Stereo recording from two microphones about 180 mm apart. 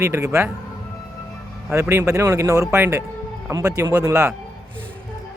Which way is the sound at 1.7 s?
15° right (ahead or behind).